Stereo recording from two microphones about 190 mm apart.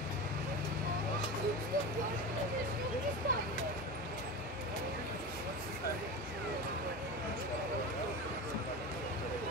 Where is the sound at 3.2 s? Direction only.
55° right (ahead or behind).